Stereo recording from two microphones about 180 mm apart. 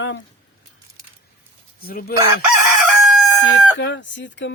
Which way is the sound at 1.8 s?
55° left (ahead or behind).